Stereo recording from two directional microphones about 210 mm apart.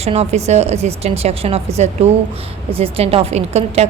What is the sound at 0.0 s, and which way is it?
A woman's voice, 30° right (ahead or behind).